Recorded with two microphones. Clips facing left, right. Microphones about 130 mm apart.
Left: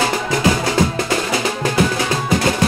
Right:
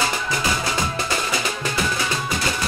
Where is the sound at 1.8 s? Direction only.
70° left (ahead or behind).